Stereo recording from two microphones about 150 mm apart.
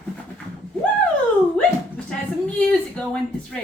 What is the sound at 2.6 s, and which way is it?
Speech, 10° left (ahead or behind).